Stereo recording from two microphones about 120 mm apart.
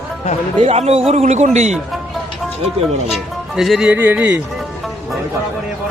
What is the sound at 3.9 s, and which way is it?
Speech, 15° right (ahead or behind).